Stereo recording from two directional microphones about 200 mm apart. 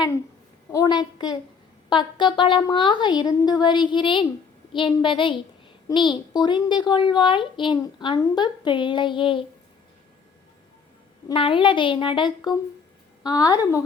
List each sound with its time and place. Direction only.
0.7 s a child's voice: 20° left (ahead or behind)
11.3 s a child's voice: 25° left (ahead or behind)